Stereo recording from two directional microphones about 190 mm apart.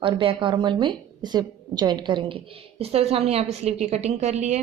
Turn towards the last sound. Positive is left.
turn(degrees=-40)  # may be behind; listen again after turning